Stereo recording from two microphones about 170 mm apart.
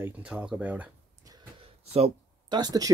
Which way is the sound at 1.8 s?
35° right (ahead or behind).